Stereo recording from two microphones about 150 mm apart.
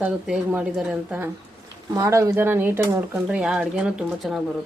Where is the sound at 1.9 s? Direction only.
20° right (ahead or behind).